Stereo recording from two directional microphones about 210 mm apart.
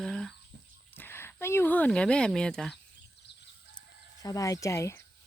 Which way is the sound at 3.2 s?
55° left (ahead or behind).